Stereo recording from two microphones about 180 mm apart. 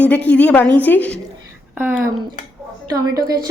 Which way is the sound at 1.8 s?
10° right (ahead or behind).